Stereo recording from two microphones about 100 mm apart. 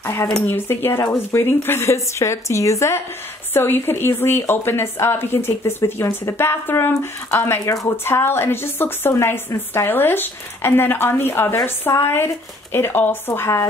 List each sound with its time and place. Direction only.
0.0 s a woman's voice: 25° left (ahead or behind)